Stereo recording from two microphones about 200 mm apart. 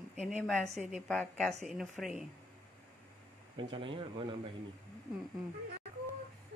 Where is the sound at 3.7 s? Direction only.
25° right (ahead or behind).